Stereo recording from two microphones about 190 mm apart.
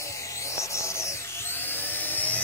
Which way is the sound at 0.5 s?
15° left (ahead or behind).